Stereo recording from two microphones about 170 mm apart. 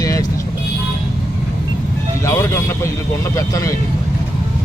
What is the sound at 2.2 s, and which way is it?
Speech, 15° left (ahead or behind).